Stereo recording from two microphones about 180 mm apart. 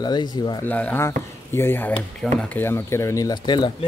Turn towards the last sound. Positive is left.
turn(degrees=25)  # may be behind; listen again after turning